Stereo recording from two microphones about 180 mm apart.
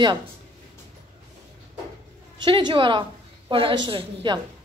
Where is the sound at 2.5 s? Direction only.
25° right (ahead or behind).